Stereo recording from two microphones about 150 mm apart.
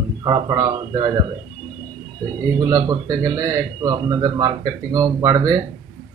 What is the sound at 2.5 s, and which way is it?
Speech, 25° right (ahead or behind).